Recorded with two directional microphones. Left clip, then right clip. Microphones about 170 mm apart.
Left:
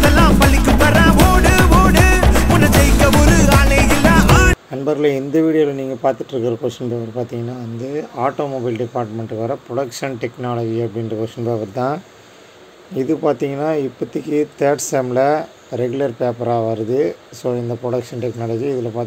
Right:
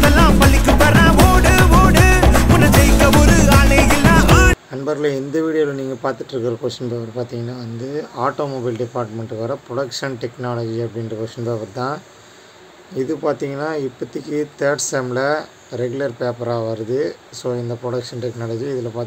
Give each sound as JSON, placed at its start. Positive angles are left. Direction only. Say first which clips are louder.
{"t": 0.0, "sound": "music", "louder": "even", "side_deg": 0}
{"t": 4.8, "sound": "a man's voice", "louder": "left 3 dB", "side_deg": 20}
{"t": 7.8, "sound": "speech", "louder": "left 1 dB", "side_deg": 10}